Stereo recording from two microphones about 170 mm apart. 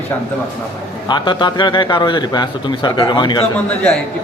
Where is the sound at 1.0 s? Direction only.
25° left (ahead or behind).